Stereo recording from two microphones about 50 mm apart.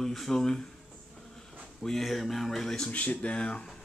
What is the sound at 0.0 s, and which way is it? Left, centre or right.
Speech, centre.